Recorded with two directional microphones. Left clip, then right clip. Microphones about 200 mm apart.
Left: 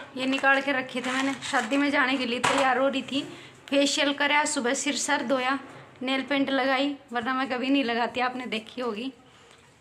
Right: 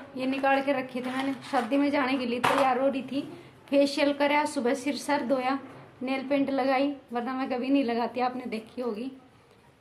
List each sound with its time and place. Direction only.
0.1 s a woman's voice: centre (ahead or behind)